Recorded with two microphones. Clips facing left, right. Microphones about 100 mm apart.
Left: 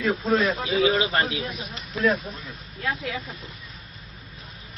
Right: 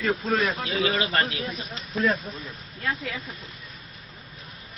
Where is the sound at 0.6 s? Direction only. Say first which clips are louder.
Left 4 dB; 15° left (ahead or behind).